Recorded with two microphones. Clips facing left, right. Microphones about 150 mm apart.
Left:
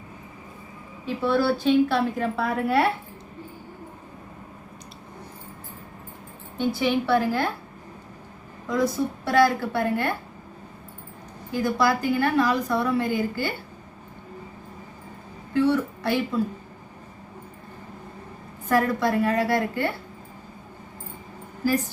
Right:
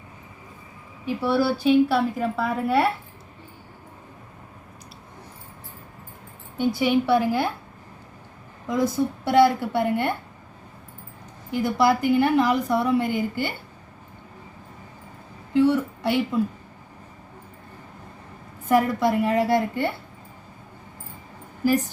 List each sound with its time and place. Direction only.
1.0 s a woman's voice: 10° right (ahead or behind)
6.6 s a woman's voice: 15° right (ahead or behind)
8.6 s a woman's voice: 20° right (ahead or behind)
11.5 s a woman's voice: 20° right (ahead or behind)
15.5 s a woman's voice: 20° right (ahead or behind)
18.7 s a woman's voice: 20° right (ahead or behind)